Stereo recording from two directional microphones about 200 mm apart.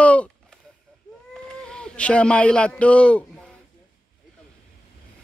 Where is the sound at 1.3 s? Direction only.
5° left (ahead or behind).